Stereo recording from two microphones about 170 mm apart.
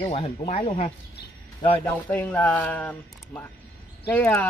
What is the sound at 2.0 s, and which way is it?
A man's voice, 10° left (ahead or behind).